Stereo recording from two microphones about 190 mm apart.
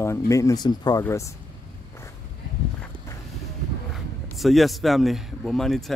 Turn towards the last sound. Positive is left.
turn(degrees=0)  # may be behind; listen again after turning